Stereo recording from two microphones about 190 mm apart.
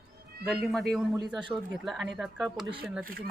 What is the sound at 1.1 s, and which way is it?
Speech, 20° right (ahead or behind).